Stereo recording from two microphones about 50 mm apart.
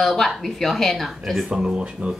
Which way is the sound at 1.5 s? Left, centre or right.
Centre.